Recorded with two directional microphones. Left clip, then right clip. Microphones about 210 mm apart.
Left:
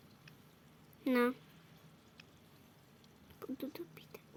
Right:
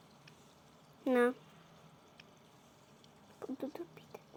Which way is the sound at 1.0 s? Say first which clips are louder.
Right 3 dB; 30° left (ahead or behind).